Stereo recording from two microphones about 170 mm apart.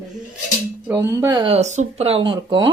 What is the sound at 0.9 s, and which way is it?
Speech, 15° right (ahead or behind).